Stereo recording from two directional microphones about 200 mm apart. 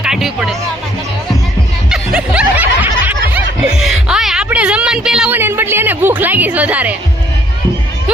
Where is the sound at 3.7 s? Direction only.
Centre (ahead or behind).